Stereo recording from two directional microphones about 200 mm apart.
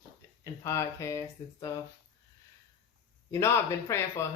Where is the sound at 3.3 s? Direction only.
15° left (ahead or behind).